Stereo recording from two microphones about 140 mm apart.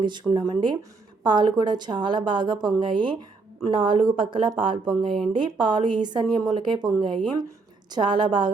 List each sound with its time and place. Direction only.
0.0 s a woman's voice: 35° right (ahead or behind)